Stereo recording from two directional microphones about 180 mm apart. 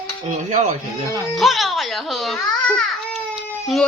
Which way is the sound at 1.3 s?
Centre (ahead or behind).